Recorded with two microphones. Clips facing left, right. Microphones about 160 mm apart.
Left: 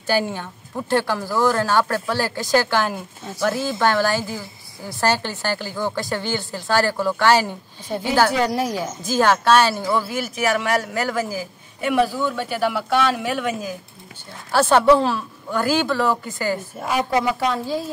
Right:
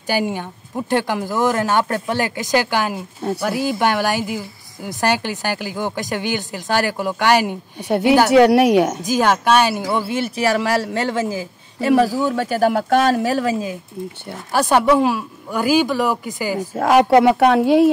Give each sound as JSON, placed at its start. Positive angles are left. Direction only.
{"t": 0.0, "sound": "speech", "side_deg": -15}
{"t": 8.3, "sound": "speech", "side_deg": -75}
{"t": 9.0, "sound": "speech", "side_deg": -15}
{"t": 11.8, "sound": "speech", "side_deg": -35}
{"t": 14.5, "sound": "speech", "side_deg": -15}
{"t": 16.5, "sound": "speech", "side_deg": -85}